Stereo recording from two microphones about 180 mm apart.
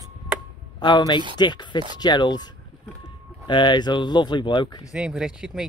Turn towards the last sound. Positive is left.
turn(degrees=-5)  # may be behind; listen again after turning